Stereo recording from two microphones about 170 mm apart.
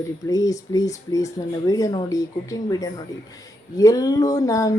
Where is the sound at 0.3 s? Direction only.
20° left (ahead or behind).